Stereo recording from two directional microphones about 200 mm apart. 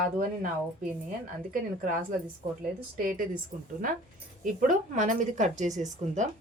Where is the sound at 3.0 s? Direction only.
45° right (ahead or behind).